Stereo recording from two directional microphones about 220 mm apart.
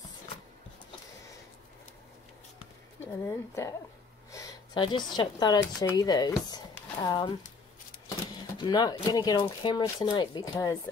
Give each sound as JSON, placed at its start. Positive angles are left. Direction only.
{"t": 3.3, "sound": "a woman's voice", "side_deg": 15}
{"t": 8.5, "sound": "speech", "side_deg": 20}